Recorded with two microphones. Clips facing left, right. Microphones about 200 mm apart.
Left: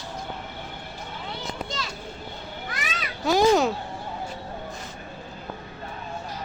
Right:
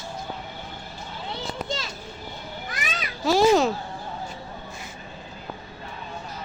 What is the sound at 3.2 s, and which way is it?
Speech, centre (ahead or behind).